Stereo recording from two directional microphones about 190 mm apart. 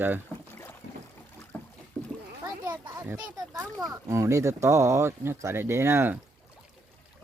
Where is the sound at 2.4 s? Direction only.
20° right (ahead or behind).